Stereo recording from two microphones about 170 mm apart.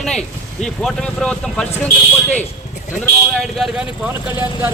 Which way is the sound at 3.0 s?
Centre (ahead or behind).